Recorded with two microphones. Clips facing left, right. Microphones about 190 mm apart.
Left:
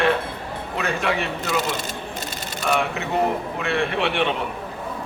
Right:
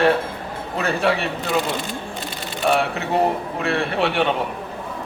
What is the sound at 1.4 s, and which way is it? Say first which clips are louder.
Speech: right 2 dB; 45° left (ahead or behind).